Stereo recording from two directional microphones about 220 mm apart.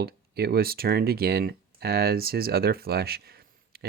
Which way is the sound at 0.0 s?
45° right (ahead or behind).